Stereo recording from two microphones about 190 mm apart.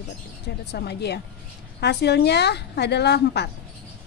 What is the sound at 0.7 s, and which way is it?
A woman's voice, 60° left (ahead or behind).